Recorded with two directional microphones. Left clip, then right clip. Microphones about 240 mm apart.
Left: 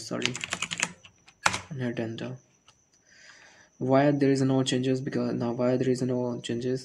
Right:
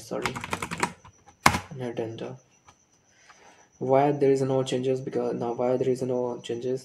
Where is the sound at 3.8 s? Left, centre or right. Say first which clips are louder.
Right 2 dB; left.